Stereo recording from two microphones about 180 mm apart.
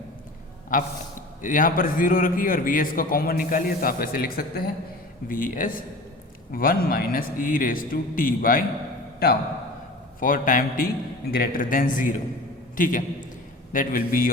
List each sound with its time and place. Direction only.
0.7 s a man's voice: 50° left (ahead or behind)
10.2 s a man's voice: 50° left (ahead or behind)